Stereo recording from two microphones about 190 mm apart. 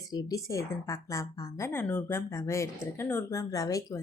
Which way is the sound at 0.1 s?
20° left (ahead or behind).